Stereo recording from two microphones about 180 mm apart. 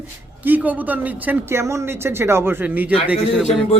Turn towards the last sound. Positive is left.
turn(degrees=-5)  # may be behind; listen again after turning